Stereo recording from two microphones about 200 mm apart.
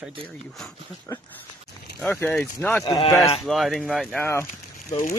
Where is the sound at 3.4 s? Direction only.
Centre (ahead or behind).